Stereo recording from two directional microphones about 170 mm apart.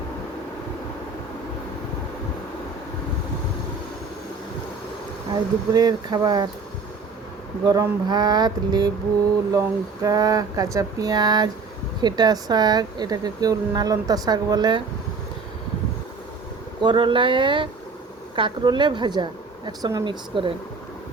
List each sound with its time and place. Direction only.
5.3 s speech: 25° right (ahead or behind)
7.6 s speech: 25° right (ahead or behind)
16.8 s speech: 30° right (ahead or behind)